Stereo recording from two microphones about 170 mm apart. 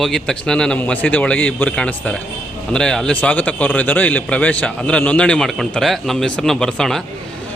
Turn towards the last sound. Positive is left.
turn(degrees=5)  # may be behind; listen again after turning